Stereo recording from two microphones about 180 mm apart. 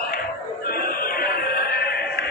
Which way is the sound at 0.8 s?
55° left (ahead or behind).